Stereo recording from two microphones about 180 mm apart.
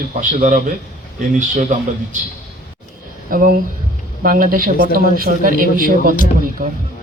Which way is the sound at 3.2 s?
50° right (ahead or behind).